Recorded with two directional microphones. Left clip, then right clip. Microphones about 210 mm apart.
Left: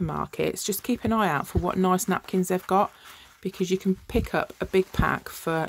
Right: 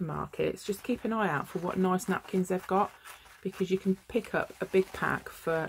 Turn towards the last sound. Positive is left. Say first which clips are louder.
# left 4 dB
turn(degrees=35)  # may be behind; listen again after turning